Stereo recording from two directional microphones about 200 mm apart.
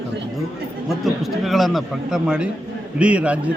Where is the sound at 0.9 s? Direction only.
Centre (ahead or behind).